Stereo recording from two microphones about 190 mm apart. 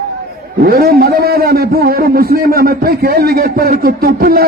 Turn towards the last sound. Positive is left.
turn(degrees=-50)  # may be behind; listen again after turning